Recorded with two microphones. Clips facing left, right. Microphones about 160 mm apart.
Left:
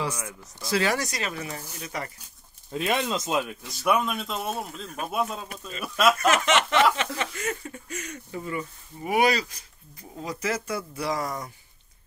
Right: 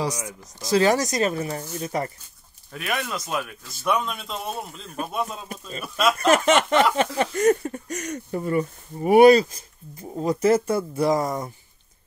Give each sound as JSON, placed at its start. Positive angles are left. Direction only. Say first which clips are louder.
{"t": 0.6, "sound": "speech", "louder": "right 6 dB", "side_deg": -40}
{"t": 2.7, "sound": "speech", "louder": "left 3 dB", "side_deg": 25}
{"t": 3.8, "sound": "speech", "louder": "left 1 dB", "side_deg": 5}
{"t": 6.3, "sound": "speech", "louder": "right 4 dB", "side_deg": -50}
{"t": 9.9, "sound": "speech", "louder": "right 9 dB", "side_deg": -35}
{"t": 10.5, "sound": "speech", "louder": "right 9 dB", "side_deg": -50}
{"t": 11.1, "sound": "speech", "louder": "right 6 dB", "side_deg": -25}